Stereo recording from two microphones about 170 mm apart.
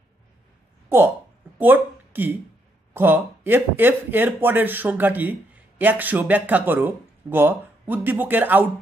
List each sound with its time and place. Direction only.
0.8 s speech: 15° right (ahead or behind)